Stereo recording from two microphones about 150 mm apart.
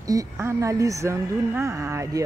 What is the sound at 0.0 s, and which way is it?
Speech, 20° right (ahead or behind).